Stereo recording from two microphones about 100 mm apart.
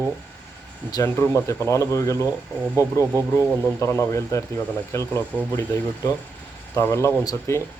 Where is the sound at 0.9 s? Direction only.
30° left (ahead or behind).